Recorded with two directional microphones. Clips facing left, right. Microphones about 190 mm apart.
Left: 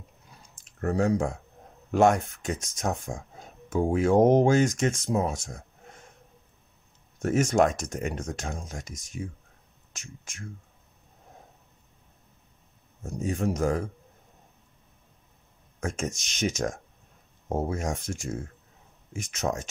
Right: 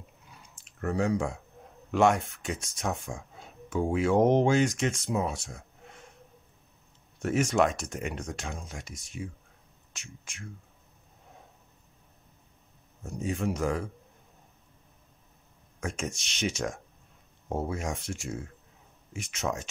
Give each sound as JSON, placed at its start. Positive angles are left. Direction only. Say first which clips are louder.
{"t": 0.3, "sound": "chewing", "louder": "even", "side_deg": 40}
{"t": 1.9, "sound": "speech", "louder": "left 2 dB", "side_deg": 45}
{"t": 7.2, "sound": "speech", "louder": "left 3 dB", "side_deg": 45}
{"t": 13.0, "sound": "speech", "louder": "left 2 dB", "side_deg": 45}
{"t": 15.8, "sound": "speech", "louder": "left 3 dB", "side_deg": 45}